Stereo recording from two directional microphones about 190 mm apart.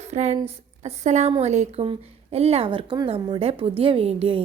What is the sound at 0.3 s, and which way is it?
A woman's voice, 30° right (ahead or behind).